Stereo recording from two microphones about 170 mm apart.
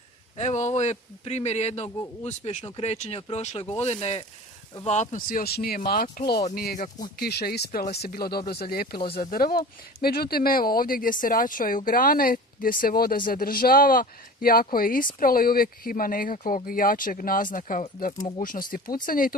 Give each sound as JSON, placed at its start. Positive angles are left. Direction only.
{"t": 0.4, "sound": "a man's voice", "side_deg": 45}
{"t": 7.2, "sound": "speech", "side_deg": 70}